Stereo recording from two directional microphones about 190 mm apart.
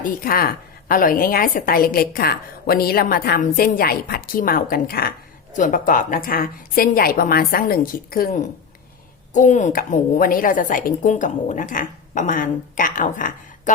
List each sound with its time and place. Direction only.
0.0 s a woman's voice: 50° left (ahead or behind)